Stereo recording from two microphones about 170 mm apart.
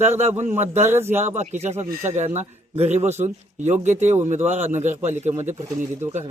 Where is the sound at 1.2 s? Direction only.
45° right (ahead or behind).